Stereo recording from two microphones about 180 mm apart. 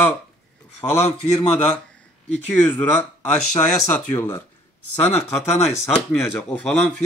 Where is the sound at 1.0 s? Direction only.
40° left (ahead or behind).